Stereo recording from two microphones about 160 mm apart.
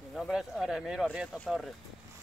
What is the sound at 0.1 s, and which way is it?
Speech, centre (ahead or behind).